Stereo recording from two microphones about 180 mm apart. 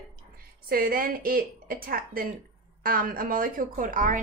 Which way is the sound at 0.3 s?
55° right (ahead or behind).